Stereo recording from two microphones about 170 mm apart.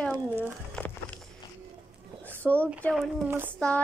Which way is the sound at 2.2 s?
10° left (ahead or behind).